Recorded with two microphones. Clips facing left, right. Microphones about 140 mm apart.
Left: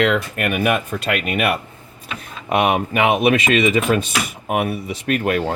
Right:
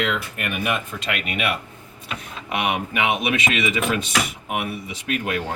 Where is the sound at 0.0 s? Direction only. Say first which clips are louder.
Left 7 dB; 55° left (ahead or behind).